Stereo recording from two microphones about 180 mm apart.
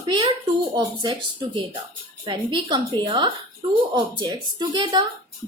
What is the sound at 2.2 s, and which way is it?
Speech, 25° right (ahead or behind).